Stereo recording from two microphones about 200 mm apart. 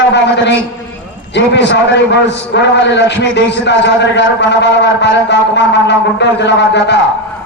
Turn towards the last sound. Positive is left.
turn(degrees=60)  # may be behind; listen again after turning